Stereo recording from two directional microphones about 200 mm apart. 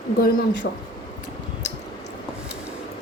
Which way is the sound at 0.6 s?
60° left (ahead or behind).